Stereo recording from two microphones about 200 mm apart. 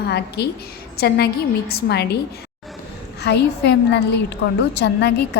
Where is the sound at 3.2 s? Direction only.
55° left (ahead or behind).